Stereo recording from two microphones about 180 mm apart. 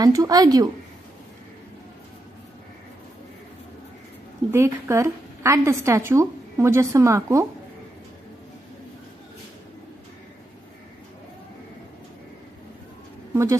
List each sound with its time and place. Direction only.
0.0 s speech: 20° right (ahead or behind)
4.5 s a woman's voice: 15° right (ahead or behind)
13.3 s a woman's voice: 15° right (ahead or behind)